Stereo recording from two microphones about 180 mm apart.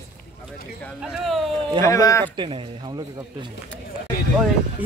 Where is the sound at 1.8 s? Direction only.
20° left (ahead or behind).